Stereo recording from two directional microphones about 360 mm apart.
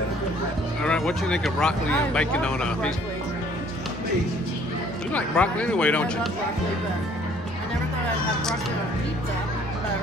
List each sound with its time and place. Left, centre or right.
0.8 s speech: centre
5.1 s speech: centre